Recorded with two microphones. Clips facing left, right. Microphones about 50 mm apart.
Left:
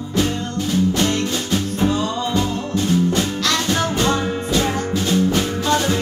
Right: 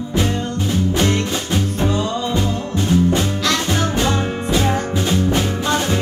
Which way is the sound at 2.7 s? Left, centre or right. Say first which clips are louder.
Right 2 dB; centre.